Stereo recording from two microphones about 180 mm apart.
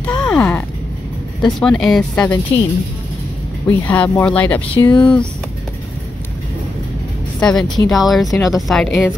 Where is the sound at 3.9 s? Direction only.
10° left (ahead or behind).